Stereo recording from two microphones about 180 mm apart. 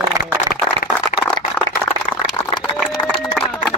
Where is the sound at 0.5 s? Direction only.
5° left (ahead or behind).